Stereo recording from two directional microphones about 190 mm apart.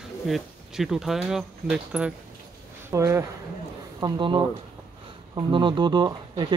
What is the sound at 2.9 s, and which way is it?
Speech, 15° right (ahead or behind).